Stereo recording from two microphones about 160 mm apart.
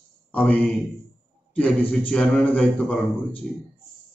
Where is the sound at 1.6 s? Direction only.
10° left (ahead or behind).